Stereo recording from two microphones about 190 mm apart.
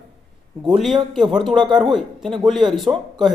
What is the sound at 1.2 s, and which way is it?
Speech, 25° right (ahead or behind).